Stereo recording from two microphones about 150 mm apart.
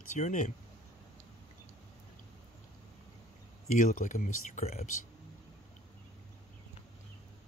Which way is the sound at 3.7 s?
55° left (ahead or behind).